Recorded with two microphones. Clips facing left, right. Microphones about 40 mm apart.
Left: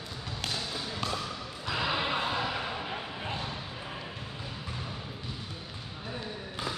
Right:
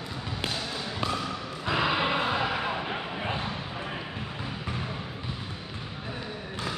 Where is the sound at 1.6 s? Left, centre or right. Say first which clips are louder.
Right 5 dB; right.